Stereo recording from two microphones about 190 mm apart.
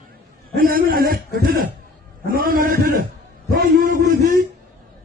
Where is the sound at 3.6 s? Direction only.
50° right (ahead or behind).